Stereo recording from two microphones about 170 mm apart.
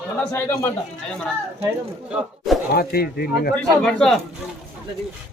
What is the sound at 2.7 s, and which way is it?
Speech, 65° left (ahead or behind).